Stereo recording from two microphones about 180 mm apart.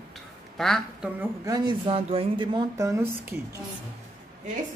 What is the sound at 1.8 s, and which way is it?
Speech, 30° right (ahead or behind).